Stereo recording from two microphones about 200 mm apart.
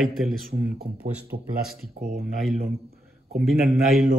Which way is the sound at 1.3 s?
50° right (ahead or behind).